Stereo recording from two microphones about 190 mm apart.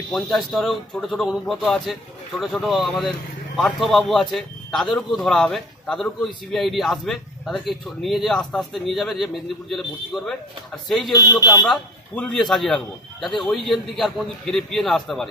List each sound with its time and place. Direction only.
0.1 s speech: centre (ahead or behind)
11.1 s speech: 20° left (ahead or behind)
11.6 s speech: 5° left (ahead or behind)